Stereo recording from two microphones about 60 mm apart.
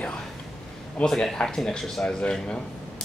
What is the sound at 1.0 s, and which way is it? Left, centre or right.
Speech, centre.